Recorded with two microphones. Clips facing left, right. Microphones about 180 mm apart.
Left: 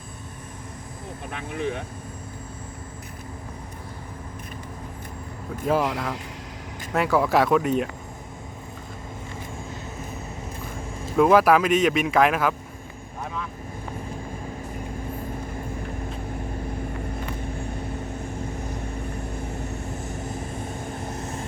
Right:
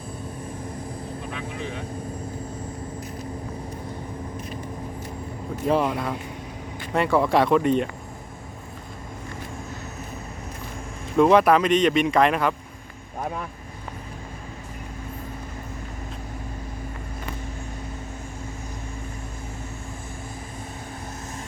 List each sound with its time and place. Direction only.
1.3 s vehicle: 55° left (ahead or behind)
5.6 s speech: centre (ahead or behind)
11.2 s speech: 5° left (ahead or behind)